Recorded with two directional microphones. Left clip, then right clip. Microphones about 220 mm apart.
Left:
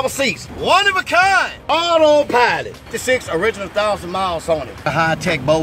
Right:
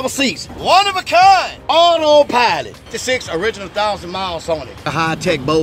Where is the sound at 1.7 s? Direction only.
35° right (ahead or behind).